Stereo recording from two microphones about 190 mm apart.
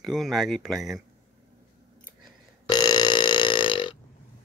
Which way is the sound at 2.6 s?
20° left (ahead or behind).